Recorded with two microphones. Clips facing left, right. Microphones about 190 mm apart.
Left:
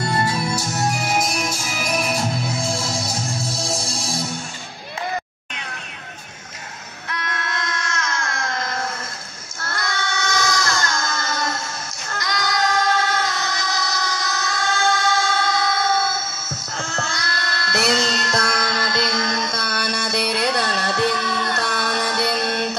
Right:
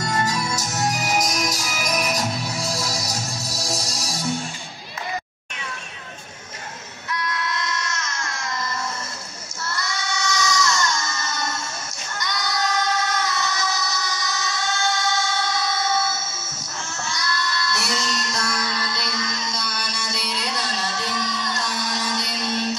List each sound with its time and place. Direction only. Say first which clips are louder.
0.3 s music: left 3 dB; 40° right (ahead or behind)
7.1 s baby cry: right 1 dB; 65° left (ahead or behind)
9.6 s child singing: left 3 dB; 55° left (ahead or behind)
12.1 s music: left 4 dB; 90° left
14.1 s vehicle: left 3 dB; 55° left (ahead or behind)
16.7 s music: left 4 dB; 75° left (ahead or behind); by 18.9 s 55° left (ahead or behind)
18.9 s music: left 7 dB; 90° left
19.1 s music: left 5 dB; 60° left (ahead or behind)